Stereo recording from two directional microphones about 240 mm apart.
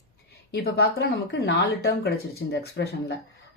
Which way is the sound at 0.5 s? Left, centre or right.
Left.